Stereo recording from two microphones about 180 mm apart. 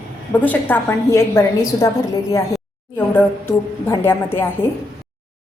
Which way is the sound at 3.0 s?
10° left (ahead or behind).